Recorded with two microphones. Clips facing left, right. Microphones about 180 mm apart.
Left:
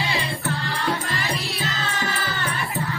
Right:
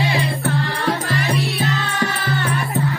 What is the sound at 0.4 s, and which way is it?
Music, 50° right (ahead or behind).